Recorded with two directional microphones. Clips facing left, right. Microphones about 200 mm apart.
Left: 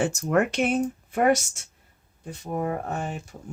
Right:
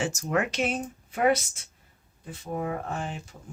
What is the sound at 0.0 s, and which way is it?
Speech, 60° left (ahead or behind).